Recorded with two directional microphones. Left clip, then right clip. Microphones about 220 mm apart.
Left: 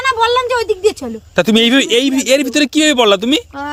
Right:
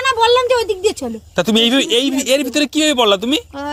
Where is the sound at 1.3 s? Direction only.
40° left (ahead or behind).